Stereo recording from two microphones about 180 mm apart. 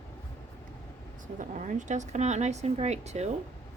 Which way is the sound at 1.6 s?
40° right (ahead or behind).